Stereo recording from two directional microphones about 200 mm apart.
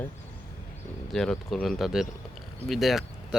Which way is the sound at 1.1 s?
Centre (ahead or behind).